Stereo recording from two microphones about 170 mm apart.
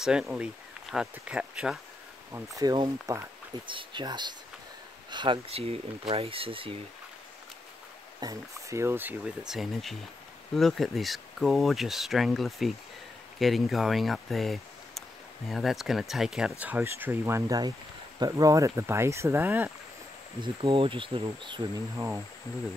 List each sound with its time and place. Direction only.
0.0 s speech: 5° right (ahead or behind)
2.3 s speech: 20° right (ahead or behind)
8.2 s speech: 20° right (ahead or behind)
9.5 s speech: centre (ahead or behind)
20.3 s speech: 30° right (ahead or behind)
21.9 s speech: 15° right (ahead or behind)